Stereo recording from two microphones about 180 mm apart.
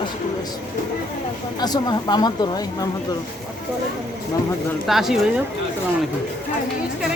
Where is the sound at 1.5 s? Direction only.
20° left (ahead or behind).